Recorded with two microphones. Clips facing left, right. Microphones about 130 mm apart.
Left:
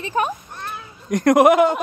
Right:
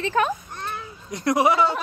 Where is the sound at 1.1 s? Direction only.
50° left (ahead or behind).